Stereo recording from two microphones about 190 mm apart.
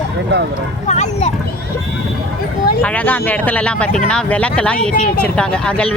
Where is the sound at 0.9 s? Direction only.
40° left (ahead or behind).